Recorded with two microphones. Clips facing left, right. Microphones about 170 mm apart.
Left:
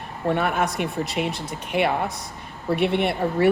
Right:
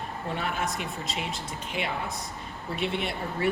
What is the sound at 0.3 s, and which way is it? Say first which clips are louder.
A woman's voice: left 9 dB; 60° left (ahead or behind).